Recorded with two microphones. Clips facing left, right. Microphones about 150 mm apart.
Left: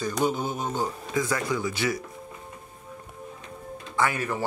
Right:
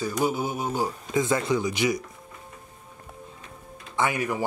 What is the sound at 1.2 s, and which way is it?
Speech, 25° right (ahead or behind).